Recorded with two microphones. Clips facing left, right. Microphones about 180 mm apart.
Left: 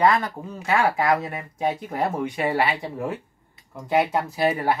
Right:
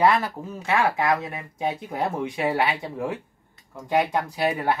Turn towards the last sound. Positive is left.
turn(degrees=0)  # may be behind; listen again after turning